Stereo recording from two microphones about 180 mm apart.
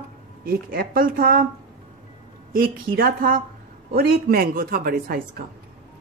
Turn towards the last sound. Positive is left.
turn(degrees=-55)  # may be behind; listen again after turning